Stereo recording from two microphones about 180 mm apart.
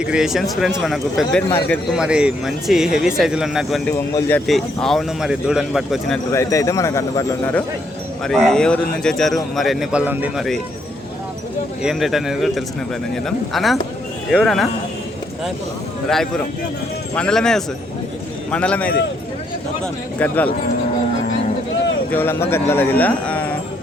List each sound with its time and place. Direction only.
0.0 s speech: 5° right (ahead or behind)
1.5 s speech: 15° left (ahead or behind)
1.9 s speech: 5° right (ahead or behind)
3.9 s speech: 15° left (ahead or behind)
4.4 s speech: centre (ahead or behind)
6.3 s speech: 15° left (ahead or behind)
8.4 s speech: 5° left (ahead or behind)
11.8 s speech: 5° right (ahead or behind)
16.0 s speech: 5° left (ahead or behind)
22.1 s speech: 10° left (ahead or behind)